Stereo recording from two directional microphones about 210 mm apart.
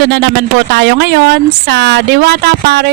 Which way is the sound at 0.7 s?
50° right (ahead or behind).